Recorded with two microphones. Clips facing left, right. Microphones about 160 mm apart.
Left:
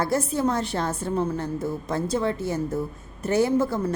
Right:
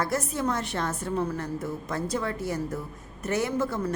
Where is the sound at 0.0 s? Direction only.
30° left (ahead or behind).